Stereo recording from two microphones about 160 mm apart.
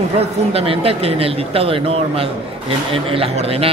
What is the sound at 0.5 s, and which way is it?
A man's voice, 40° right (ahead or behind).